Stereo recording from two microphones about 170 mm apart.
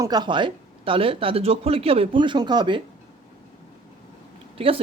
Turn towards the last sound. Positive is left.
turn(degrees=-35)  # may be behind; listen again after turning